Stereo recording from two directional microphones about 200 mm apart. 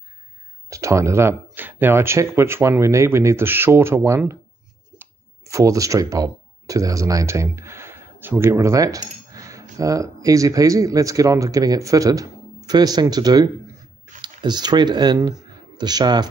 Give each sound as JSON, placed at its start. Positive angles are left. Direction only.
{"t": 0.7, "sound": "speech", "side_deg": -15}